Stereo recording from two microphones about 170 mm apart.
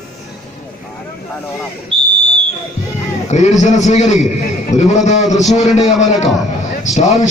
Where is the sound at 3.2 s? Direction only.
45° left (ahead or behind).